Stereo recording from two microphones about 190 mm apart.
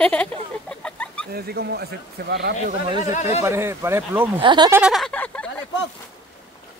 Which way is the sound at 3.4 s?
15° right (ahead or behind).